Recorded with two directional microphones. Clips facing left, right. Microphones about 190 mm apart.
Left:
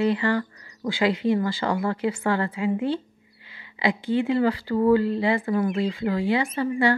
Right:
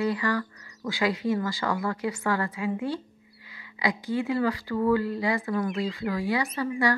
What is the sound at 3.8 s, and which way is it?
A woman's voice, 25° left (ahead or behind).